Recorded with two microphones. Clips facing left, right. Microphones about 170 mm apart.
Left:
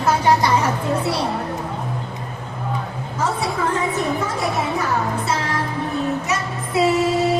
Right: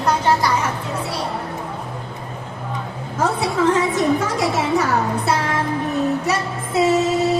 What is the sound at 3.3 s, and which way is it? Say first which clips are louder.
Speech: right 4 dB; 90° right.